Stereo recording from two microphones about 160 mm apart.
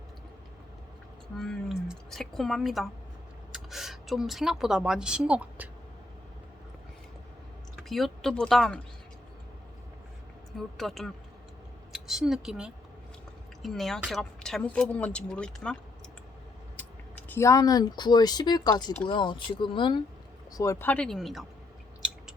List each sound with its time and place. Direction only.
1.4 s a woman's voice: centre (ahead or behind)
7.8 s speech: centre (ahead or behind)
10.8 s a woman's voice: centre (ahead or behind)
16.8 s a sound: 10° left (ahead or behind)
17.2 s speech: 15° left (ahead or behind)
20.5 s speech: 20° left (ahead or behind); by 21.4 s centre (ahead or behind)